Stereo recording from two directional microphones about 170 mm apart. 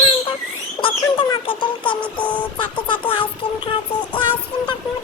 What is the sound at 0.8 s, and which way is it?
Speech, 30° left (ahead or behind).